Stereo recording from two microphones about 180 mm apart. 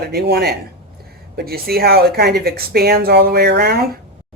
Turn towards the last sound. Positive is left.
turn(degrees=-60)  # may be behind; listen again after turning